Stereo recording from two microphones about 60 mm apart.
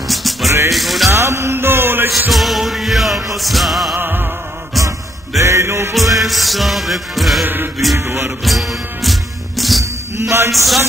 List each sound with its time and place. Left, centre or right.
0.1 s music: centre
1.1 s music: right
2.3 s music: centre
3.9 s music: right
5.4 s music: right
6.1 s music: centre
7.4 s music: right
7.9 s music: right
8.5 s music: centre
10.2 s music: right
10.5 s music: centre